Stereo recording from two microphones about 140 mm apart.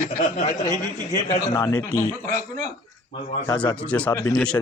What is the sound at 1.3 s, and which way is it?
Speech, 25° left (ahead or behind).